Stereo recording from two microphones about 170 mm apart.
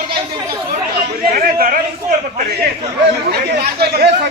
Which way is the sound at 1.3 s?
60° right (ahead or behind).